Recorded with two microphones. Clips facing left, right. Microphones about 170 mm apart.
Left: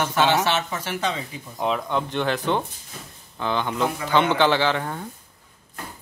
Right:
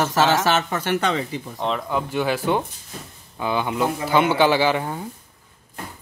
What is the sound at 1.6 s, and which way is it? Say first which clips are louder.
Speech: left 1 dB; centre (ahead or behind).